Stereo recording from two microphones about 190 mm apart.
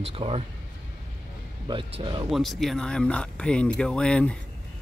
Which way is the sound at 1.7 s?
30° right (ahead or behind).